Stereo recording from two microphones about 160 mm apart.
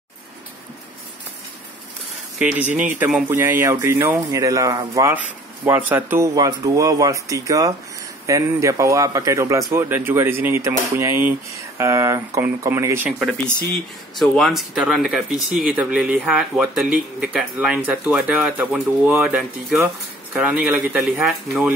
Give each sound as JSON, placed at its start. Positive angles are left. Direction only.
{"t": 2.7, "sound": "speech", "side_deg": -10}
{"t": 14.2, "sound": "speech", "side_deg": 0}